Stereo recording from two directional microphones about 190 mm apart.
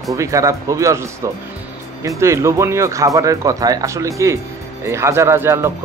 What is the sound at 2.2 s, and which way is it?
Speech, 15° right (ahead or behind).